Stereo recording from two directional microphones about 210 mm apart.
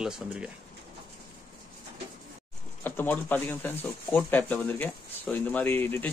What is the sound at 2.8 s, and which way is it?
Speech, 10° left (ahead or behind).